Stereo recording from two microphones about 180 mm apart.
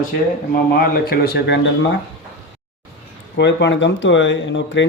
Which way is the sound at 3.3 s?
75° left (ahead or behind).